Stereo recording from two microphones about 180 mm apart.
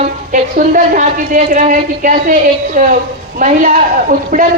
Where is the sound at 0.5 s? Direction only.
45° right (ahead or behind).